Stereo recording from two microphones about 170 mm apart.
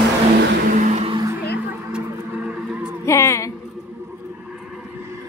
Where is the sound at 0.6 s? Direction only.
50° right (ahead or behind).